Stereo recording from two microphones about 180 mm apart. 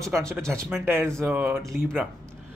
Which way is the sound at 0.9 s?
10° right (ahead or behind).